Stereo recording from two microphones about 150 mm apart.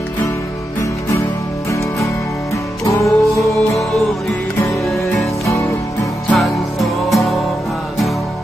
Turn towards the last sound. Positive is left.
turn(degrees=0)  # may be behind; listen again after turning